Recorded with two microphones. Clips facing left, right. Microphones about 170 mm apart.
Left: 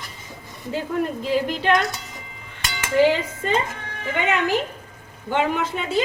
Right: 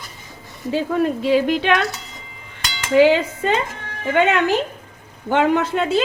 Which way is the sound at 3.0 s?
80° right.